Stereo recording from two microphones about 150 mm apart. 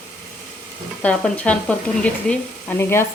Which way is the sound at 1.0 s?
10° left (ahead or behind).